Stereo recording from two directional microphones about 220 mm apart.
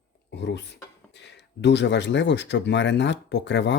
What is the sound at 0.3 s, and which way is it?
Speech, 50° left (ahead or behind).